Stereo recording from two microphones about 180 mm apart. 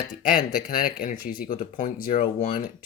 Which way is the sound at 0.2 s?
50° left (ahead or behind).